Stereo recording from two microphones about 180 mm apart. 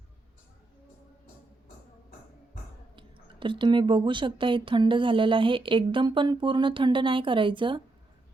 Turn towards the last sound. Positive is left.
turn(degrees=-25)  # may be behind; listen again after turning